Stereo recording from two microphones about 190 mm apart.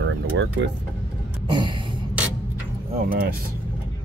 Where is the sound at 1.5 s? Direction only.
25° right (ahead or behind).